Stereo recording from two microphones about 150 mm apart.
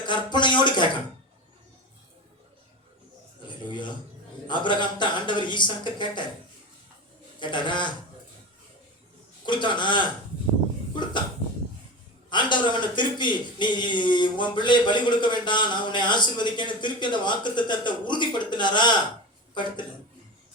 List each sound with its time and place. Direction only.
0.0 s a sound: 30° left (ahead or behind)
3.7 s a man's voice: 30° left (ahead or behind)
7.3 s a man's voice: 30° left (ahead or behind)
9.5 s a man's voice: 30° left (ahead or behind)
12.3 s a man's voice: 30° left (ahead or behind)